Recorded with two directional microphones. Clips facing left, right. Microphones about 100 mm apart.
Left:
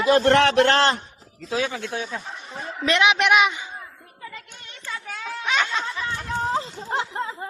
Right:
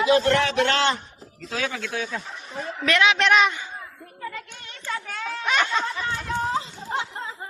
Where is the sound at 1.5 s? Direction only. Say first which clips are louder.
Left 3 dB; 20° left (ahead or behind).